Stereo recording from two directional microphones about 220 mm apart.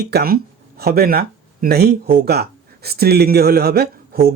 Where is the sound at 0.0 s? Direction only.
45° right (ahead or behind).